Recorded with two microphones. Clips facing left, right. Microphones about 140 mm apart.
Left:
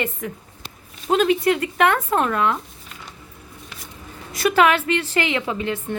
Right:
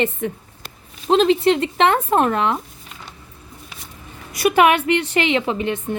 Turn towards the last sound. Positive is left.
turn(degrees=-20)  # may be behind; listen again after turning